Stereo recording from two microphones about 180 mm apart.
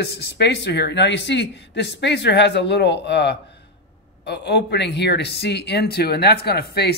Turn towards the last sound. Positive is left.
turn(degrees=60)  # may be behind; listen again after turning